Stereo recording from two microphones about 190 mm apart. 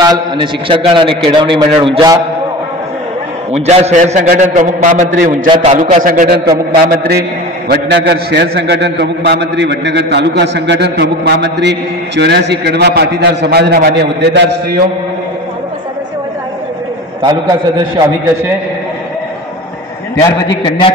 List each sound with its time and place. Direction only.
0.0 s a man's voice: 25° right (ahead or behind)
3.5 s a man's voice: 35° right (ahead or behind); by 6.4 s 50° right (ahead or behind)
7.6 s a man's voice: 60° right (ahead or behind)
17.2 s a man's voice: 20° right (ahead or behind)
20.4 s a man's voice: 25° left (ahead or behind)